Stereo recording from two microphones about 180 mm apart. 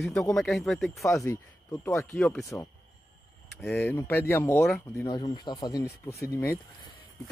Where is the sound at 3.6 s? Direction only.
10° left (ahead or behind).